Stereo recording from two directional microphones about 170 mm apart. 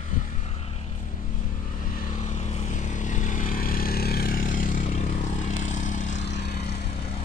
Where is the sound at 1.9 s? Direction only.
50° left (ahead or behind).